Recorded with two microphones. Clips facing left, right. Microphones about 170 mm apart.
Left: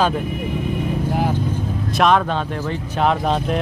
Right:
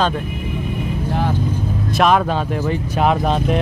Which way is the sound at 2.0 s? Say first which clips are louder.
Right 1 dB; 5° right (ahead or behind).